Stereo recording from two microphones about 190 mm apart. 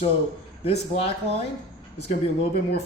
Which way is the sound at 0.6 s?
30° left (ahead or behind).